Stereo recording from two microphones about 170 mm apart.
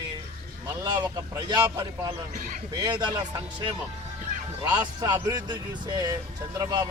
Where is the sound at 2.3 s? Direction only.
50° right (ahead or behind).